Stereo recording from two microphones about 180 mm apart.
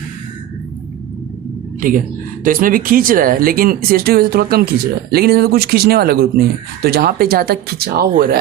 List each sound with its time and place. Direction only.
2.4 s speech: 50° right (ahead or behind)